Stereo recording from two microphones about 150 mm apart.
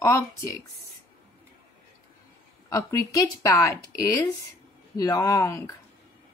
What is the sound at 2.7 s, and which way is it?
Speech, 20° left (ahead or behind).